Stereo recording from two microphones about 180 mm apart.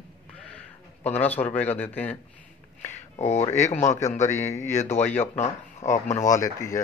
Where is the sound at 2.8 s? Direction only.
40° left (ahead or behind).